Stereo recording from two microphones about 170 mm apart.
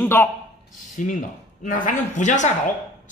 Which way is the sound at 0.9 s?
50° left (ahead or behind).